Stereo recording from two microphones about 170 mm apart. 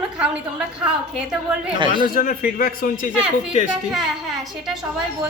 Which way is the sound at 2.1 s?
55° left (ahead or behind).